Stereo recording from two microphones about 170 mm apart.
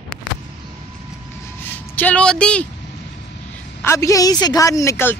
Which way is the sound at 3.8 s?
20° left (ahead or behind).